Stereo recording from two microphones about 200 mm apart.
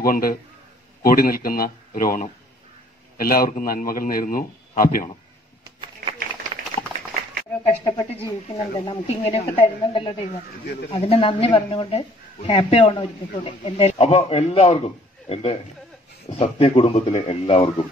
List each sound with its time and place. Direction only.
0.0 s a man's voice: 45° left (ahead or behind)
7.6 s speech: 20° left (ahead or behind)